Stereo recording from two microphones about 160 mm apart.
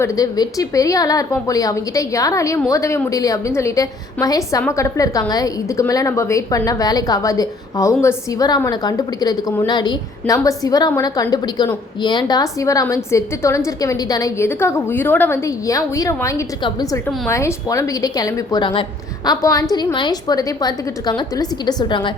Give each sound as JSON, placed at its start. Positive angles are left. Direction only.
{"t": 0.0, "sound": "a woman's voice", "side_deg": 20}